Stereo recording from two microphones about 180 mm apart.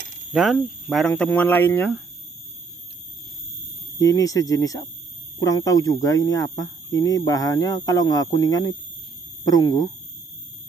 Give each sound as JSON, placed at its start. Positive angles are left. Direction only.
{"t": 0.3, "sound": "speech", "side_deg": 0}
{"t": 4.0, "sound": "speech", "side_deg": 20}